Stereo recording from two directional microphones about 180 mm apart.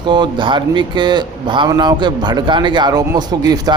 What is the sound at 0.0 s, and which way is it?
A man's voice, 25° right (ahead or behind).